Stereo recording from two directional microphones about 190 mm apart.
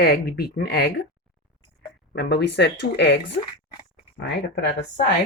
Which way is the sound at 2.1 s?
65° left (ahead or behind).